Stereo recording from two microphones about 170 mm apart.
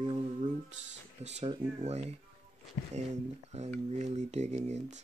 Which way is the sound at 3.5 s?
40° right (ahead or behind).